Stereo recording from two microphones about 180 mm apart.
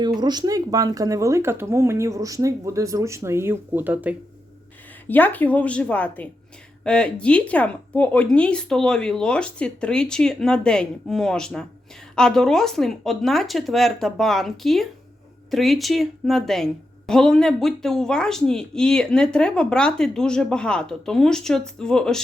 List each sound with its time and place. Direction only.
0.2 s speech: 25° right (ahead or behind)
5.0 s a woman's voice: 10° left (ahead or behind)